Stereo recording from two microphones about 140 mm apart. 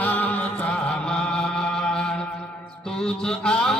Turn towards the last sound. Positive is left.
turn(degrees=5)  # may be behind; listen again after turning